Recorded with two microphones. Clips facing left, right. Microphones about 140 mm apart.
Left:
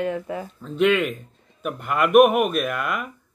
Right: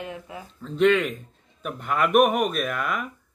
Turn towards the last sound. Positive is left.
turn(degrees=5)  # may be behind; listen again after turning